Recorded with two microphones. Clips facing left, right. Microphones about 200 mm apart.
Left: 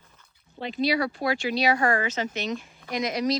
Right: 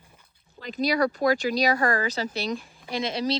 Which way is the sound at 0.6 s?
45° right (ahead or behind).